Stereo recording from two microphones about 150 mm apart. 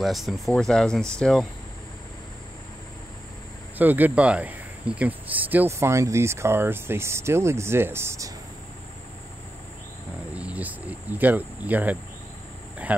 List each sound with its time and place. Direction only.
0.0 s speech: centre (ahead or behind)
3.7 s speech: 10° right (ahead or behind)
10.3 s speech: 10° right (ahead or behind)